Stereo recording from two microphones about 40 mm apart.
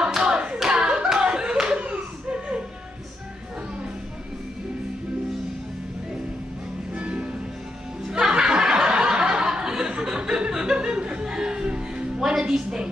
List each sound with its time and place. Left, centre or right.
0.1 s hands: centre
0.7 s clapping: right
2.0 s a sound: right
7.0 s music: right
8.1 s laughter: centre